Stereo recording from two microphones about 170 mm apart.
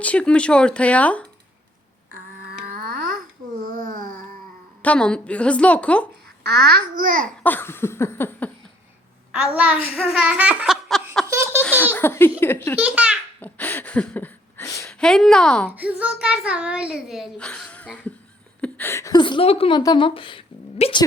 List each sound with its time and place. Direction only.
0.0 s a woman's voice: 5° left (ahead or behind)
2.6 s a sound: 60° right (ahead or behind)
4.8 s a woman's voice: 5° left (ahead or behind)
6.4 s a child's voice: 65° right (ahead or behind)
7.4 s a woman's voice: 10° left (ahead or behind)
9.3 s a woman's voice: 5° right (ahead or behind)
9.9 s laughter: 5° right (ahead or behind)
11.3 s laughter: 15° right (ahead or behind)
11.6 s laughter: 10° left (ahead or behind)
11.9 s a woman's voice: 15° left (ahead or behind)
12.8 s a child's voice: 5° right (ahead or behind)
13.4 s speech: 10° left (ahead or behind)
14.8 s speech: 5° left (ahead or behind)
15.7 s a child's voice: 10° right (ahead or behind); by 21.0 s 35° left (ahead or behind)